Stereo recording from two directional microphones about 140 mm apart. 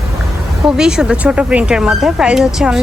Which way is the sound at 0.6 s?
5° right (ahead or behind).